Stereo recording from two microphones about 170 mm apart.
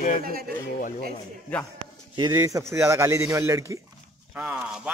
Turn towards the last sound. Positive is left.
turn(degrees=-5)  # may be behind; listen again after turning